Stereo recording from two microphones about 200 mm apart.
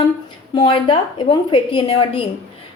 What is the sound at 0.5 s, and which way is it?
A woman's voice, 25° left (ahead or behind).